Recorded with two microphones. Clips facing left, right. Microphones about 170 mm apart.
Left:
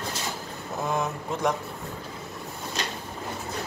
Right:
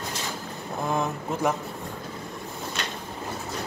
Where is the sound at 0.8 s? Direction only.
Centre (ahead or behind).